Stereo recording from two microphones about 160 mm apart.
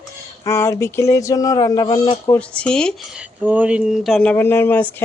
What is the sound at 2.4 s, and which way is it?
Speech, 5° left (ahead or behind).